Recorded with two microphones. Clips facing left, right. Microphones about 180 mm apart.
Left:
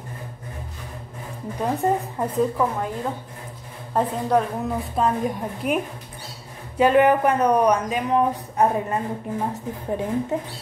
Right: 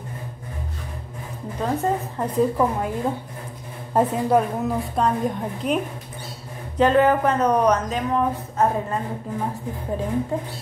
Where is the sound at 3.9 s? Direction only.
5° right (ahead or behind); by 9.0 s 15° left (ahead or behind).